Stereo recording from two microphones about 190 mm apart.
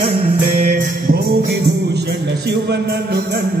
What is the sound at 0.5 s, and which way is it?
Speech, 35° right (ahead or behind).